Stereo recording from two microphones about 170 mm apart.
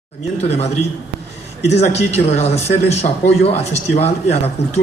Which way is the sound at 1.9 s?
40° left (ahead or behind).